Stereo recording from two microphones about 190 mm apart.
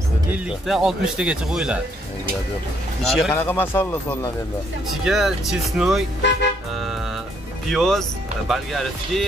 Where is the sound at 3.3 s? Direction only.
10° left (ahead or behind).